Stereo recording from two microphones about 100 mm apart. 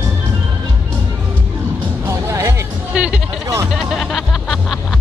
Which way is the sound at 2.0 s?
30° right (ahead or behind).